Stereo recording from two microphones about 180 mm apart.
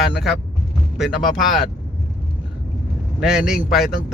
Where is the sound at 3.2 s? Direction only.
5° right (ahead or behind).